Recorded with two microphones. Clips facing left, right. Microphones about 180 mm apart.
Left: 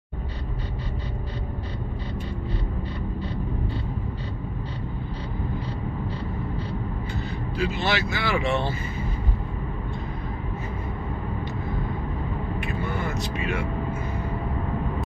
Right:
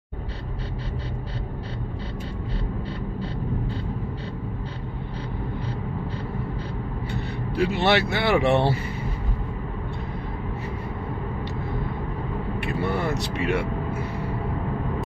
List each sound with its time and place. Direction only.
7.5 s speech: 60° right (ahead or behind)
12.8 s vehicle: 70° right (ahead or behind)